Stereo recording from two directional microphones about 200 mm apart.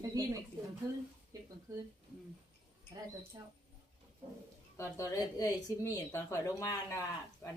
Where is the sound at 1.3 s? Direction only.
15° right (ahead or behind).